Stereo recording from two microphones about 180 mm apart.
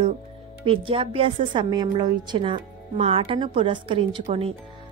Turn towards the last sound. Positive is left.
turn(degrees=-30)  # may be behind; listen again after turning